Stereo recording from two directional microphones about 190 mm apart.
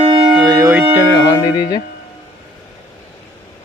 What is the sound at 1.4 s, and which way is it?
Speech, 20° left (ahead or behind).